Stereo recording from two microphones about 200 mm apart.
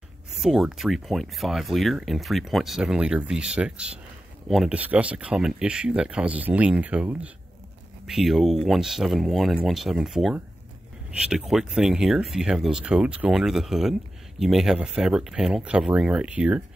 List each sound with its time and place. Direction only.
0.3 s speech: centre (ahead or behind)